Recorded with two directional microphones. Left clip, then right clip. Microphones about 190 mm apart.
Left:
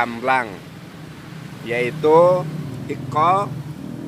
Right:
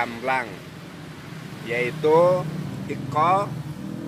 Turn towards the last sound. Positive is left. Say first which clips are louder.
# left 3 dB
turn(degrees=15)  # may be behind; listen again after turning